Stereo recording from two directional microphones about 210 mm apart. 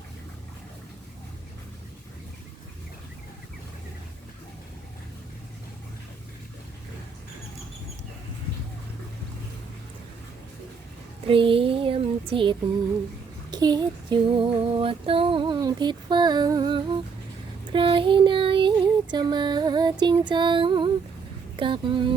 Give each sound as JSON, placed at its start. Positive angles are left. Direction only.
{"t": 11.3, "sound": "a sound", "side_deg": -25}
{"t": 13.5, "sound": "female singing", "side_deg": -20}
{"t": 17.7, "sound": "child singing", "side_deg": -25}
{"t": 19.1, "sound": "female singing", "side_deg": -20}
{"t": 21.5, "sound": "speech", "side_deg": -25}